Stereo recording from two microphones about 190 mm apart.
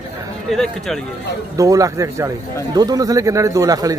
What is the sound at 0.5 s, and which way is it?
Speech, centre (ahead or behind).